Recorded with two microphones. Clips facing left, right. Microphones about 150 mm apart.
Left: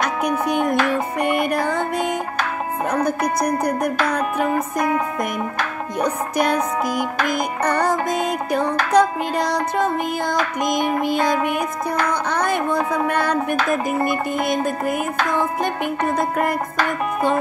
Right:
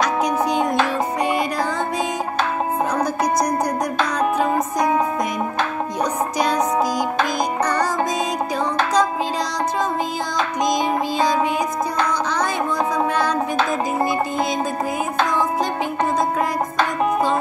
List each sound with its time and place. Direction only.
0.0 s music: 55° left (ahead or behind)
3.4 s music: 55° left (ahead or behind)
4.6 s music: 25° right (ahead or behind)
6.0 s music: 55° left (ahead or behind)
7.6 s music: 55° left (ahead or behind)
8.9 s music: 60° left (ahead or behind)